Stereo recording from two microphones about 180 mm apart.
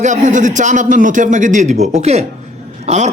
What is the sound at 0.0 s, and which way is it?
A man's voice, 45° right (ahead or behind).